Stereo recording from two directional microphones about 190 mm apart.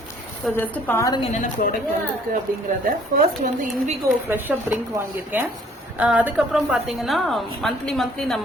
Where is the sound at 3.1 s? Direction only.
50° right (ahead or behind).